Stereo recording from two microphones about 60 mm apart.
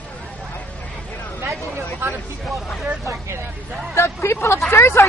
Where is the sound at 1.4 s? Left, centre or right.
Right.